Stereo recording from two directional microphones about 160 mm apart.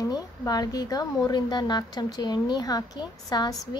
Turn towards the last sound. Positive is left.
turn(degrees=25)  # may be behind; listen again after turning